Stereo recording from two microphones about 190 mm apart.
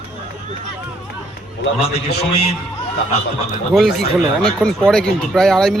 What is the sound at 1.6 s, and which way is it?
Speech, 60° left (ahead or behind).